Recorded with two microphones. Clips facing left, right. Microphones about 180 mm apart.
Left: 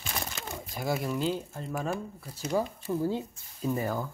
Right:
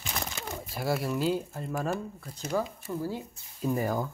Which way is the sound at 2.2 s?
10° left (ahead or behind).